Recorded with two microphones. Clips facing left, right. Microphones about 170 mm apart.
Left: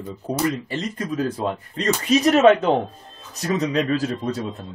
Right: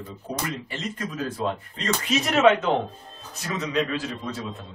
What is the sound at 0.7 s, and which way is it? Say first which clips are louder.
Speech: left 5 dB; 35° left (ahead or behind).